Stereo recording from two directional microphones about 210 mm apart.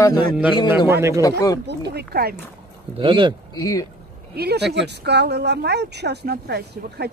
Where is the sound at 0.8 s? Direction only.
10° right (ahead or behind).